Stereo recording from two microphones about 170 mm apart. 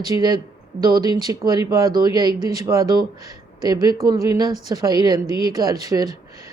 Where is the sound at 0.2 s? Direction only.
25° right (ahead or behind).